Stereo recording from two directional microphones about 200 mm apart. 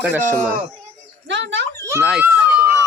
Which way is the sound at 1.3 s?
65° right (ahead or behind).